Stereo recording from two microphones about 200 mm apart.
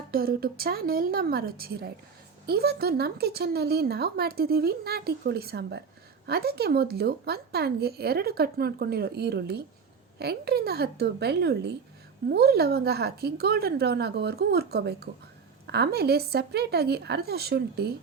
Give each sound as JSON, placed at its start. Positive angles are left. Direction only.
{"t": 0.1, "sound": "speech", "side_deg": -50}